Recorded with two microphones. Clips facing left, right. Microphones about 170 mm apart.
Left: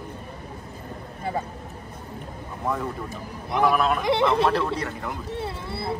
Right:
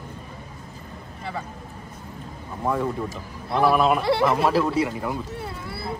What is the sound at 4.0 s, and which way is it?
Speech, 20° left (ahead or behind).